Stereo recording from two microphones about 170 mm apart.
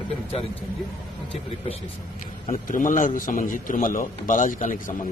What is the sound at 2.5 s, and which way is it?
A man's voice, 50° left (ahead or behind).